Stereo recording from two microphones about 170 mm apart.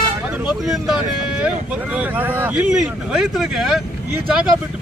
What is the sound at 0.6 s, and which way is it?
Speech, centre (ahead or behind).